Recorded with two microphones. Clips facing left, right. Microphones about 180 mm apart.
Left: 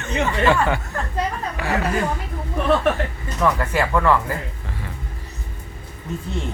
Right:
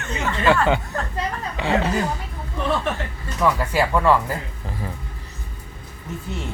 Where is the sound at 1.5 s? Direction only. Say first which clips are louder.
Right 3 dB; 25° right (ahead or behind).